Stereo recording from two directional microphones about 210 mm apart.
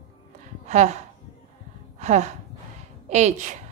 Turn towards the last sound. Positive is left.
turn(degrees=-35)  # may be behind; listen again after turning